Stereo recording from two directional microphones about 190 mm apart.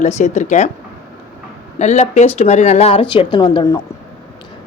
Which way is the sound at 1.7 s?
40° left (ahead or behind).